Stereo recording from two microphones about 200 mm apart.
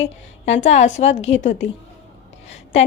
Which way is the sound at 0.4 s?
30° left (ahead or behind).